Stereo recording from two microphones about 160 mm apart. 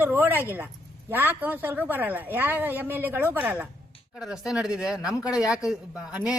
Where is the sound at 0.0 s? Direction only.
15° right (ahead or behind).